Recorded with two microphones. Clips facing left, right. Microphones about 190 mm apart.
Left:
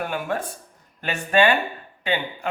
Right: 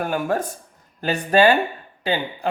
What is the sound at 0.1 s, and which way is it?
Speech, 40° right (ahead or behind).